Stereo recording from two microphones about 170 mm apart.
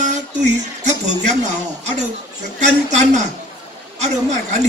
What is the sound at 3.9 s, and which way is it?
Speech, 40° right (ahead or behind).